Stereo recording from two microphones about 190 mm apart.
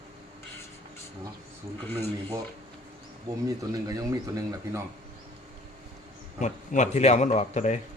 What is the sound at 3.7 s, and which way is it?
Speech, 20° right (ahead or behind).